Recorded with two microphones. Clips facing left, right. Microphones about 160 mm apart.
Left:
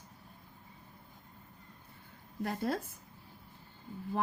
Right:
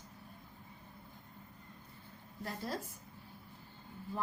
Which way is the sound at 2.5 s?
65° left (ahead or behind).